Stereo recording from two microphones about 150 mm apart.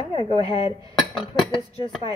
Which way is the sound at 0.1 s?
35° left (ahead or behind).